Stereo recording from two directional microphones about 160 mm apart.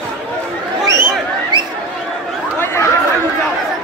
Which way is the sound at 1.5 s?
25° right (ahead or behind).